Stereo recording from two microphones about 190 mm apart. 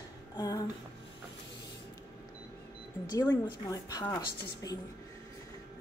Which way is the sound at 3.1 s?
15° left (ahead or behind).